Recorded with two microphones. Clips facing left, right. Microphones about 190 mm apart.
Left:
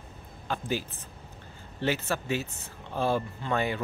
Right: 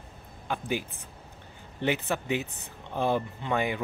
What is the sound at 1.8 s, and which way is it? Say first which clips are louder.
Speech: right 1 dB; 15° right (ahead or behind).